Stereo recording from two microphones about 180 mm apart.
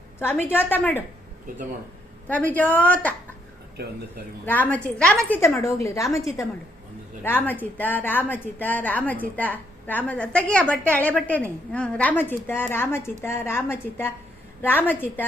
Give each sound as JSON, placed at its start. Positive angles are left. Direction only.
{"t": 0.2, "sound": "a woman's voice", "side_deg": 10}
{"t": 2.2, "sound": "a woman's voice", "side_deg": 10}
{"t": 4.4, "sound": "a woman's voice", "side_deg": 10}
{"t": 5.4, "sound": "a woman's voice", "side_deg": 15}
{"t": 7.3, "sound": "a woman's voice", "side_deg": 10}